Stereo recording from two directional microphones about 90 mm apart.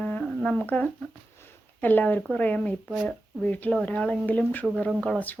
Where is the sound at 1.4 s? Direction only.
20° left (ahead or behind).